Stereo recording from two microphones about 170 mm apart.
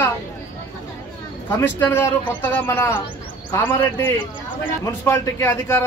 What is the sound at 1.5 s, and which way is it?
Speech, 15° left (ahead or behind).